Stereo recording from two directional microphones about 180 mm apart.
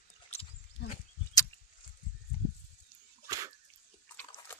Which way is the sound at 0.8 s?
70° left (ahead or behind).